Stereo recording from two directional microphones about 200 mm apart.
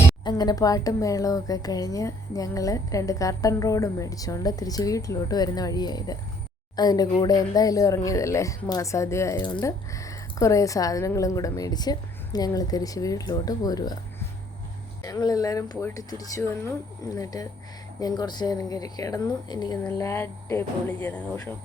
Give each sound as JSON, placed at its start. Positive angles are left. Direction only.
{"t": 0.3, "sound": "speech", "side_deg": 20}
{"t": 15.0, "sound": "speech", "side_deg": 20}